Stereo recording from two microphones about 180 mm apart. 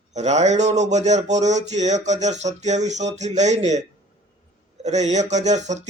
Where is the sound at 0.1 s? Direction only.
40° right (ahead or behind).